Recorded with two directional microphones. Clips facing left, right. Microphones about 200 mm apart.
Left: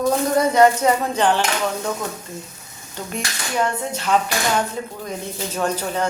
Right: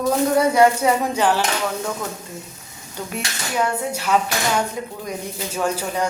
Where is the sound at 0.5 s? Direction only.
10° right (ahead or behind).